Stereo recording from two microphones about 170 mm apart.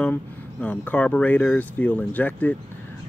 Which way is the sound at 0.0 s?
10° left (ahead or behind).